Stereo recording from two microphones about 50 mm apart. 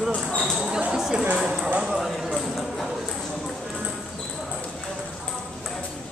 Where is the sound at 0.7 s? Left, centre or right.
Centre.